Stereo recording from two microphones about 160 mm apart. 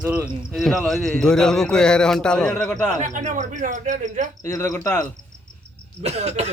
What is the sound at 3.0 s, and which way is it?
Speech, 50° right (ahead or behind).